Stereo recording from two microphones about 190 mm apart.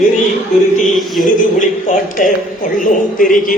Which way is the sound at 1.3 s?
45° left (ahead or behind).